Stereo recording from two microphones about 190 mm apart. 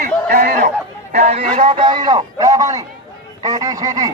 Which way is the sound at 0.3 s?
55° right (ahead or behind).